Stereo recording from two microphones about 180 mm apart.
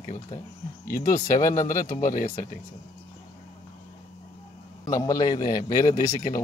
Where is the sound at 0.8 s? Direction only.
55° left (ahead or behind).